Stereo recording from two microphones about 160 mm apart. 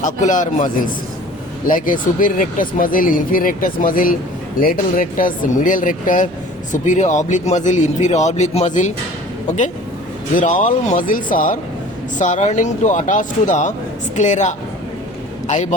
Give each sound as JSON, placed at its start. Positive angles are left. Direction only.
{"t": 0.0, "sound": "a man's voice", "side_deg": 50}
{"t": 10.3, "sound": "a man's voice", "side_deg": 55}